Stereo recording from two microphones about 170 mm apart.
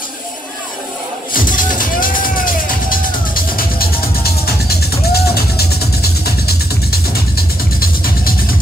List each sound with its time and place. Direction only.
1.3 s music: 55° left (ahead or behind)